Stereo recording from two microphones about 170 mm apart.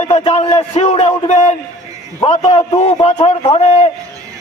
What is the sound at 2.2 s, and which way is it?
A man's voice, 35° left (ahead or behind).